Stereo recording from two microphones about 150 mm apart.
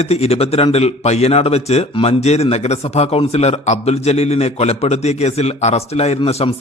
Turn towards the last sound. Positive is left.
turn(degrees=45)  # may be behind; listen again after turning